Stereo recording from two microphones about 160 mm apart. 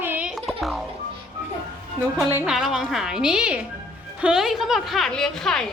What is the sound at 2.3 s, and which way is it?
Speech, 5° right (ahead or behind).